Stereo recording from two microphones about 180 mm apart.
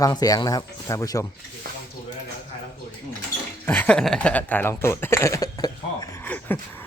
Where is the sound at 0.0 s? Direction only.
20° left (ahead or behind).